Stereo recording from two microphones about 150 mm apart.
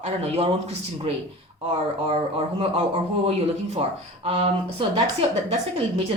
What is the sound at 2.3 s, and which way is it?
A man's voice, 40° right (ahead or behind).